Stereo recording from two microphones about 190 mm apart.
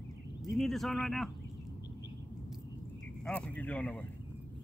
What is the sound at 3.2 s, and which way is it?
Speech, 5° left (ahead or behind).